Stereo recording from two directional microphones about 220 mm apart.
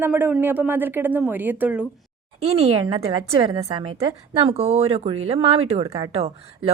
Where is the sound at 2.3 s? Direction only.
30° right (ahead or behind).